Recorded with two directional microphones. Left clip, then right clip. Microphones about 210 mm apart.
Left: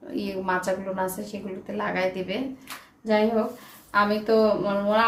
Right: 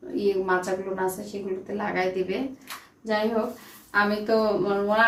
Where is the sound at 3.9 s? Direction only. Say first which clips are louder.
Left 2 dB; 30° left (ahead or behind).